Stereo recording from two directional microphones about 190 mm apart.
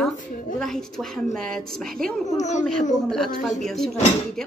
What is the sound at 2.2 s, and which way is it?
Speech, 40° left (ahead or behind).